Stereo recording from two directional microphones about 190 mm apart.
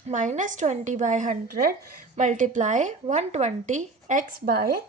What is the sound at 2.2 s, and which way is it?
A woman's voice, 40° right (ahead or behind).